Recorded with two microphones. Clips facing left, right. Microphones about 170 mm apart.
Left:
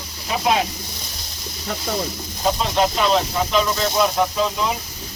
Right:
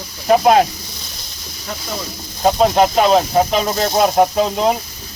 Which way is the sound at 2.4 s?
50° right (ahead or behind).